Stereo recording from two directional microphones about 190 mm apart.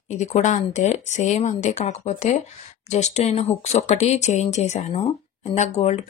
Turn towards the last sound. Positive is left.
turn(degrees=35)  # may be behind; listen again after turning